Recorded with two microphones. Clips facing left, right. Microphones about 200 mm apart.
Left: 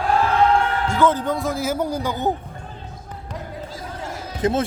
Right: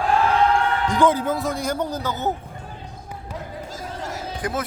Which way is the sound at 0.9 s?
15° right (ahead or behind).